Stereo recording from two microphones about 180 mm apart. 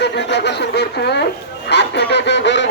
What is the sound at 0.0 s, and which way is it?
Speech, 70° left (ahead or behind).